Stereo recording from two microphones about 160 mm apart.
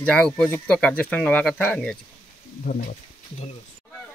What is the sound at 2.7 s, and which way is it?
Speech, 65° left (ahead or behind).